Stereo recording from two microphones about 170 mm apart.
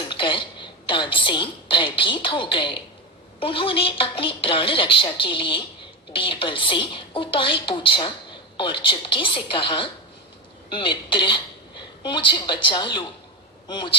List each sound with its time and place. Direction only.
0.0 s a woman's voice: 30° left (ahead or behind)